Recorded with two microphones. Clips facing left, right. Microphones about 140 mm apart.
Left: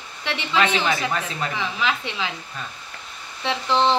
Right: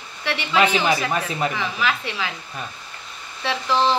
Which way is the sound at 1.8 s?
20° left (ahead or behind).